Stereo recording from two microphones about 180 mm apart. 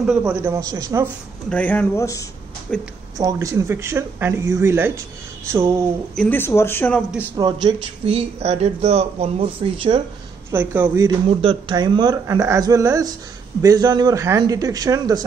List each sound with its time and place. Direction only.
0.0 s speech: 5° right (ahead or behind)
1.5 s speech: 10° left (ahead or behind)
2.7 s speech: 5° left (ahead or behind)
3.2 s speech: 20° right (ahead or behind)
6.1 s speech: 10° left (ahead or behind)
7.3 s speech: 25° right (ahead or behind)
10.5 s speech: 10° right (ahead or behind)
11.2 s speech: 30° right (ahead or behind)